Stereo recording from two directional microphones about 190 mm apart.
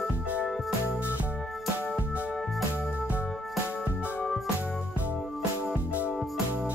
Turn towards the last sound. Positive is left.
turn(degrees=-5)  # may be behind; listen again after turning